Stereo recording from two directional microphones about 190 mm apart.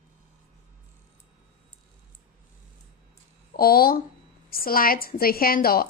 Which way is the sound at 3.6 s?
50° left (ahead or behind).